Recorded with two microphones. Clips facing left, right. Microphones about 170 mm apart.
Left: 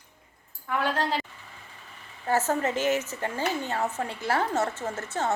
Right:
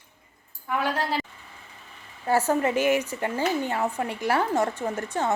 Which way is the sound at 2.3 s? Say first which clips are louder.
Right 3 dB; 10° right (ahead or behind).